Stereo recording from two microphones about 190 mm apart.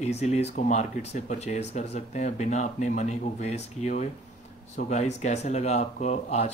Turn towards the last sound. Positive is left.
turn(degrees=35)  # may be behind; listen again after turning